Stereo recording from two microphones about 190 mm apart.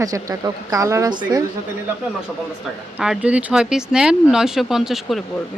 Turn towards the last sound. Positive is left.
turn(degrees=0)  # may be behind; listen again after turning